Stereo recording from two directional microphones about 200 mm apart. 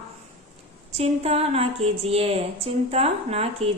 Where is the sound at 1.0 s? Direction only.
30° right (ahead or behind).